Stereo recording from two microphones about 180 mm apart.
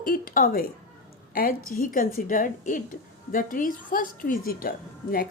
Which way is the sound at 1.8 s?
50° left (ahead or behind).